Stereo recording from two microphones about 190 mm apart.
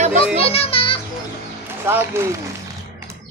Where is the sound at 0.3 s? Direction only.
30° left (ahead or behind).